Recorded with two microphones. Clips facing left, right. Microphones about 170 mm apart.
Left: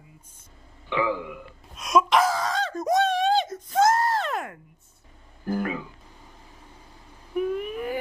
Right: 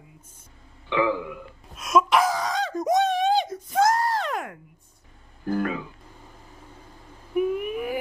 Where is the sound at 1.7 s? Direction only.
5° right (ahead or behind).